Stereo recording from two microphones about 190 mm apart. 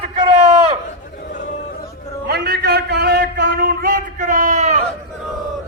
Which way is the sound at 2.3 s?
55° right (ahead or behind).